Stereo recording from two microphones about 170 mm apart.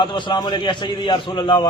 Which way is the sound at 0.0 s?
30° left (ahead or behind).